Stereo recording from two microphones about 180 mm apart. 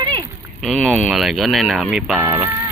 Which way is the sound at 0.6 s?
Centre (ahead or behind).